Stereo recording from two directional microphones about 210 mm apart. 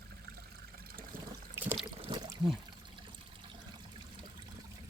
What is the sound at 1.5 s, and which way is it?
Boat, 10° right (ahead or behind).